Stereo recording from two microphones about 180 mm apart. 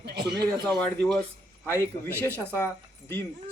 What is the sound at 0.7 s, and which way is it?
Speech, 5° left (ahead or behind).